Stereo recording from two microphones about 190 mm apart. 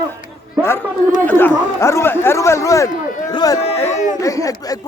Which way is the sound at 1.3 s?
10° left (ahead or behind).